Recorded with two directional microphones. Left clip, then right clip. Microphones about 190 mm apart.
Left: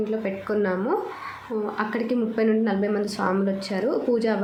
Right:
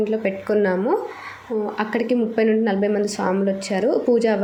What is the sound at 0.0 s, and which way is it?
Speech, 20° right (ahead or behind).